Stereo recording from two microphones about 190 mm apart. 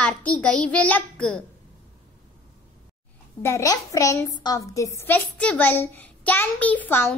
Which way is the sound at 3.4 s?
15° left (ahead or behind).